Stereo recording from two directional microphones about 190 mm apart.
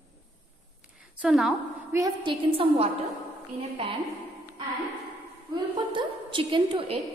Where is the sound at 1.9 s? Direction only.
20° right (ahead or behind).